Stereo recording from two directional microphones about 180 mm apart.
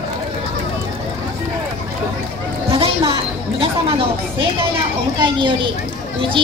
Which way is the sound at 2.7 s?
35° right (ahead or behind).